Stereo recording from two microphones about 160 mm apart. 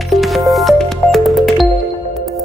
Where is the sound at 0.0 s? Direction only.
Centre (ahead or behind).